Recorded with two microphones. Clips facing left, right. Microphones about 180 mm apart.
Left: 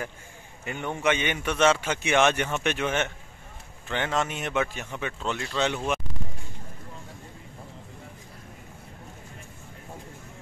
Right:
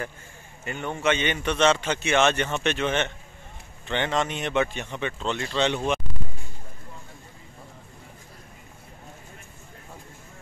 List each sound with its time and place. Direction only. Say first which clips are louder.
0.7 s a man's voice: right 1 dB; 15° left (ahead or behind)